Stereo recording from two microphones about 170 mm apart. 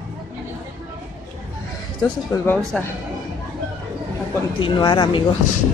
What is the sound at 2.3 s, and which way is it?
Speech, 15° left (ahead or behind).